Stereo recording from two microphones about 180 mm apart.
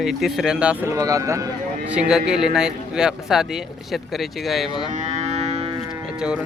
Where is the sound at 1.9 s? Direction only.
5° right (ahead or behind).